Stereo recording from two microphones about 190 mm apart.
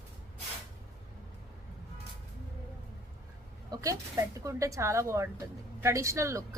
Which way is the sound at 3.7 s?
15° right (ahead or behind).